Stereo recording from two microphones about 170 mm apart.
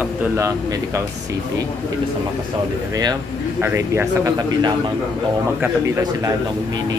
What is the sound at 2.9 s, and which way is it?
A man's voice, 20° right (ahead or behind).